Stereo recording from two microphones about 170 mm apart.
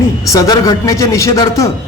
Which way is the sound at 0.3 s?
20° left (ahead or behind).